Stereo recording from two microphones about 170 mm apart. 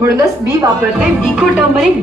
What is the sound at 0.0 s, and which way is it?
Speech, 20° right (ahead or behind).